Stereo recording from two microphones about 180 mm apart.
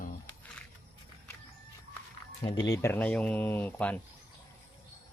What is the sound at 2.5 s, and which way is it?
Speech, 20° left (ahead or behind).